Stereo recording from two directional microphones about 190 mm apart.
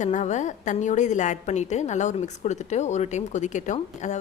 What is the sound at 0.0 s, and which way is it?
A woman's voice, 40° left (ahead or behind).